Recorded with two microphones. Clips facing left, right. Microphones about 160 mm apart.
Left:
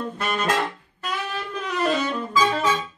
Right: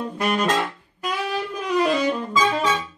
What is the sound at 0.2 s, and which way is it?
Saxophone, 10° right (ahead or behind).